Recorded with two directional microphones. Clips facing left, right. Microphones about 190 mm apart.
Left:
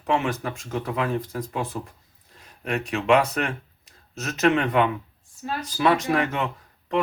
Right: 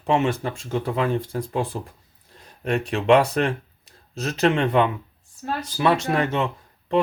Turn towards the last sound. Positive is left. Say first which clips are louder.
# right 3 dB
turn(degrees=-25)  # may be behind; listen again after turning